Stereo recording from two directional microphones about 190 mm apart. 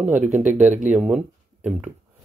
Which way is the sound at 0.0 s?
10° right (ahead or behind).